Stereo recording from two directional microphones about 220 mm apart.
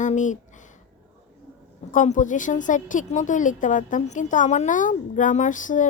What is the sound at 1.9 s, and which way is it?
A woman's voice, 35° left (ahead or behind).